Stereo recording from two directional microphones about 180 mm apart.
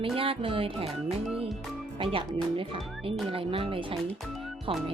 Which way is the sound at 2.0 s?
30° right (ahead or behind).